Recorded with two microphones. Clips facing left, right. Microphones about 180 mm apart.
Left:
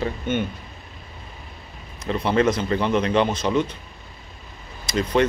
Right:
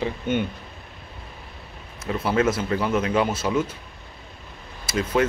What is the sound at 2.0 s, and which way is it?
Speech, 5° right (ahead or behind).